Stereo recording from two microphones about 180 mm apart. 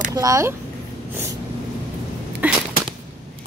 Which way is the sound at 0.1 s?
20° right (ahead or behind).